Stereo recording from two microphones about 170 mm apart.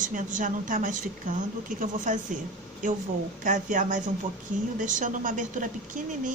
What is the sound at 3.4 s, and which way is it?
Speech, 50° right (ahead or behind).